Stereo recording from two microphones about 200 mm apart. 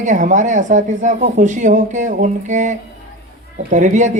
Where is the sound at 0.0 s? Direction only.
40° right (ahead or behind).